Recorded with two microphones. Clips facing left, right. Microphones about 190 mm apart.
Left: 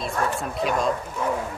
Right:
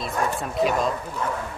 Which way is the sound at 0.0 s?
Centre (ahead or behind).